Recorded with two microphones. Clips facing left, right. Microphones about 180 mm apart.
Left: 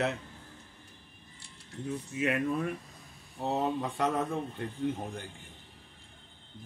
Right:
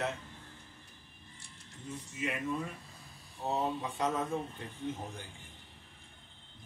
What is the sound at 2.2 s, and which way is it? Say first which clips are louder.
Speech: left 6 dB; 60° left (ahead or behind).